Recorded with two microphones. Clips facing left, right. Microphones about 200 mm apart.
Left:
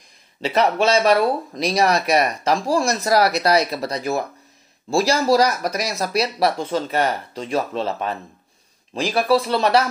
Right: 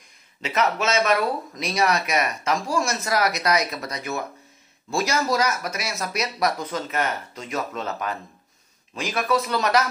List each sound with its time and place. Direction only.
0.4 s speech: 30° left (ahead or behind)